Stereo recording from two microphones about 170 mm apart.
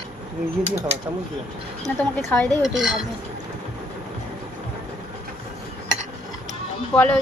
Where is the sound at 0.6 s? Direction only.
40° right (ahead or behind).